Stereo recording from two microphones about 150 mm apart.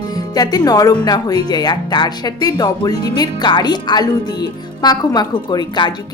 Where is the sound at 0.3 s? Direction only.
25° left (ahead or behind).